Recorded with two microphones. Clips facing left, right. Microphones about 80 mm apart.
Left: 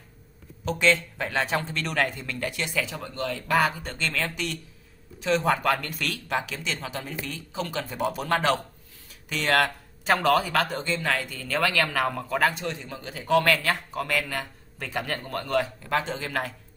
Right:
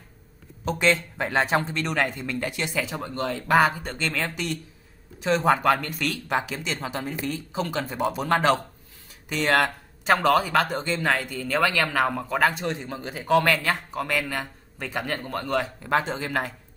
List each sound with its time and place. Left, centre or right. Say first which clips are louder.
0.7 s a man's voice: even; right
9.3 s a man's voice: right 2 dB; centre
10.0 s speech: right 2 dB; centre
12.6 s a man's voice: right 3 dB; right
13.4 s speech: right 1 dB; centre